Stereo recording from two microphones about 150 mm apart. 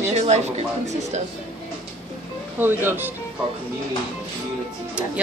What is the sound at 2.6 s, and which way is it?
Speech, 15° right (ahead or behind).